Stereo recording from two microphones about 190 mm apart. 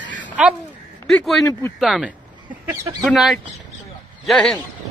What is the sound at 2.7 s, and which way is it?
Speech, 15° right (ahead or behind).